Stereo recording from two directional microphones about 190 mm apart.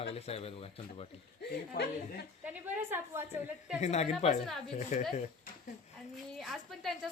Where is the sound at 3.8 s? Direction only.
35° left (ahead or behind).